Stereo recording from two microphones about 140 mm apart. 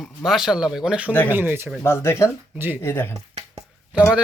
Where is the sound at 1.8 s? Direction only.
15° left (ahead or behind).